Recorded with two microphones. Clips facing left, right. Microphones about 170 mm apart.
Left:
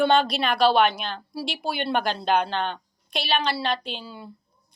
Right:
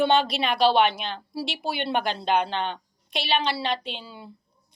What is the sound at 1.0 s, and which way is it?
A woman's voice, 20° right (ahead or behind).